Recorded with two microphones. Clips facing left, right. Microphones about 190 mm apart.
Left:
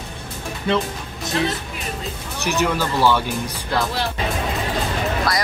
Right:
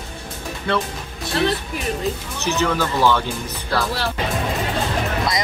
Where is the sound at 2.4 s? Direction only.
15° left (ahead or behind).